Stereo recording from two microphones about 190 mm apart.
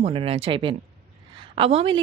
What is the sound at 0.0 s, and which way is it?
A woman's voice, 30° right (ahead or behind).